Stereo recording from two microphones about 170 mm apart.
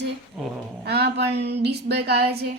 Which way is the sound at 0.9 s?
70° right (ahead or behind).